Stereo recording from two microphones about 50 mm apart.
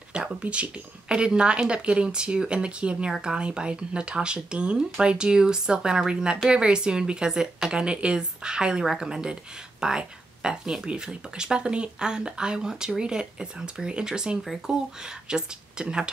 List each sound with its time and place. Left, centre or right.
0.1 s speech: right